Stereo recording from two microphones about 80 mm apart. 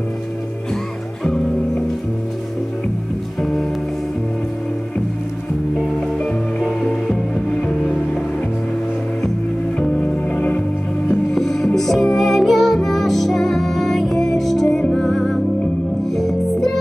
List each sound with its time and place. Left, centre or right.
6.6 s music: centre
9.8 s music: centre
11.3 s music: centre